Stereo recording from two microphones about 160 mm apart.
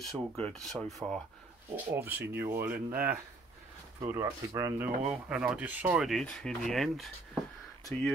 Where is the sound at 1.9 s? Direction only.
15° right (ahead or behind).